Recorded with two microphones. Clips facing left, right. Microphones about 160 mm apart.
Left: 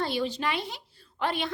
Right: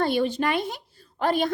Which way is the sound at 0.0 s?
50° right (ahead or behind).